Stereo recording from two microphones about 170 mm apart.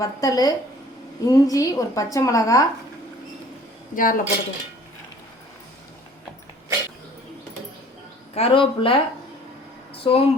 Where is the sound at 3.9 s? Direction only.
55° left (ahead or behind).